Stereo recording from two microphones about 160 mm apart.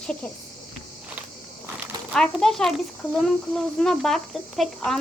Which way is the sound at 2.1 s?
5° left (ahead or behind).